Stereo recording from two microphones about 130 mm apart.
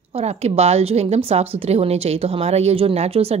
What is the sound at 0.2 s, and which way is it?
Speech, 55° right (ahead or behind).